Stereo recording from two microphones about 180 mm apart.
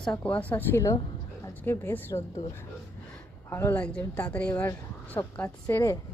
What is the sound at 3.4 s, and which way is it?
A woman's voice, 15° left (ahead or behind).